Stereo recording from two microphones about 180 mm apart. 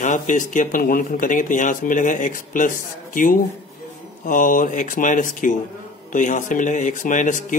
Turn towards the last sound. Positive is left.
turn(degrees=45)  # may be behind; listen again after turning